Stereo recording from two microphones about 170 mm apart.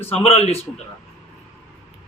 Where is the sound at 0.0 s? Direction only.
35° left (ahead or behind).